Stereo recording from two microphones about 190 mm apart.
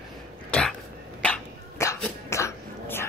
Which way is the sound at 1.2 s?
10° left (ahead or behind).